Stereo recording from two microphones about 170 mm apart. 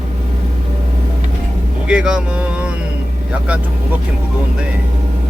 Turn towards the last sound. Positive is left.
turn(degrees=-10)  # may be behind; listen again after turning